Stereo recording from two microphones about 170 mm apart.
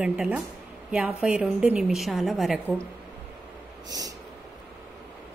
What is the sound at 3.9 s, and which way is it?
Speech, 20° right (ahead or behind).